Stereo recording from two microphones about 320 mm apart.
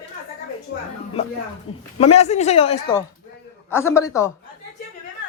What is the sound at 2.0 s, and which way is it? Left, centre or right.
A man's voice, centre.